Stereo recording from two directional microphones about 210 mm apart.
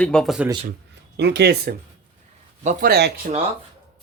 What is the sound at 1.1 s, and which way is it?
Speech, 55° right (ahead or behind).